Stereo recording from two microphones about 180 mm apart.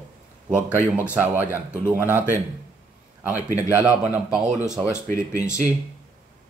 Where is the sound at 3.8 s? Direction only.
10° right (ahead or behind).